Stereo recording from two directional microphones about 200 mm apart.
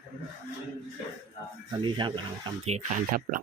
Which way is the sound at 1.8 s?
25° right (ahead or behind).